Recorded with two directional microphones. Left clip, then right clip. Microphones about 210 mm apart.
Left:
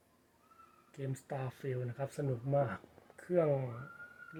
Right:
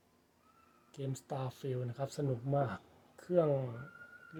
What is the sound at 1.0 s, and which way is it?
Speech, 20° right (ahead or behind).